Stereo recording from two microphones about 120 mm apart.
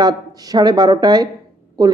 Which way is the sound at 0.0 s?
30° right (ahead or behind).